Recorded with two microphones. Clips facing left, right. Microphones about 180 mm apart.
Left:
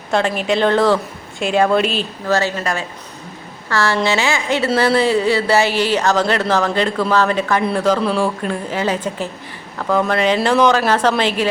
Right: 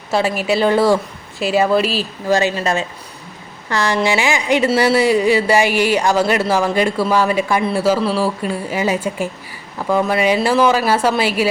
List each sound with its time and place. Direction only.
0.1 s speech: 5° right (ahead or behind)
2.2 s speech: 15° right (ahead or behind)